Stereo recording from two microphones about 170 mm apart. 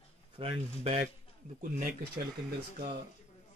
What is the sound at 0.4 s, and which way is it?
Speech, 35° right (ahead or behind).